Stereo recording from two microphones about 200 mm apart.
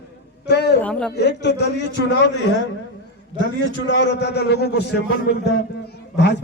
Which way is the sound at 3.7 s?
60° left (ahead or behind).